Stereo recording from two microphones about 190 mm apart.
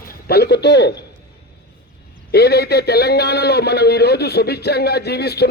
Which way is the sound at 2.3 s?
55° left (ahead or behind).